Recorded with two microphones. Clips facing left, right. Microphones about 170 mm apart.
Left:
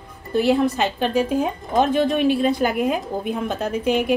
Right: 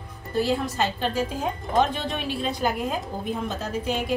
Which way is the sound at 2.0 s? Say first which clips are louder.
Left 11 dB; 55° left (ahead or behind).